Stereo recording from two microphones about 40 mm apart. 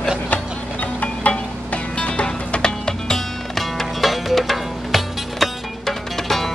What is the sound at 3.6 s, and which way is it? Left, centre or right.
Music, centre.